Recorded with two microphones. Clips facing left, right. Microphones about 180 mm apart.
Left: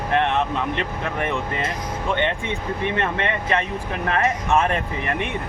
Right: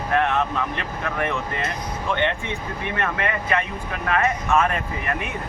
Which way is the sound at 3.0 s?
25° left (ahead or behind).